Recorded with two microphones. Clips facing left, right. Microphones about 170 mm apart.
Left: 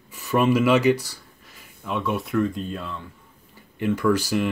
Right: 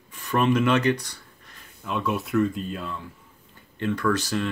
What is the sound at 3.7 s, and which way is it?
Speech, 10° left (ahead or behind).